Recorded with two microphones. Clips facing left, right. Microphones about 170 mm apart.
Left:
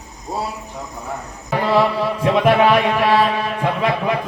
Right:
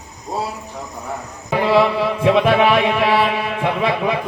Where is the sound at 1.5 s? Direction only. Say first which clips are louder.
Right 2 dB; 15° right (ahead or behind).